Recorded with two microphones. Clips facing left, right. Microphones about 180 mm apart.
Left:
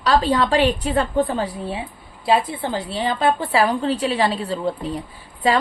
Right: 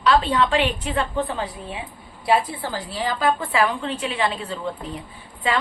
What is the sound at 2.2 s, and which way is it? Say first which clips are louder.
A woman's voice: left 2 dB; 25° left (ahead or behind).